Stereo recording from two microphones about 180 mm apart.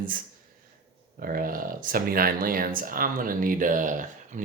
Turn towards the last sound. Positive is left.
turn(degrees=-45)  # may be behind; listen again after turning